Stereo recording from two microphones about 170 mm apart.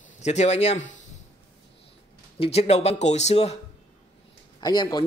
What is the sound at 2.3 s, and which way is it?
Speech, 35° left (ahead or behind).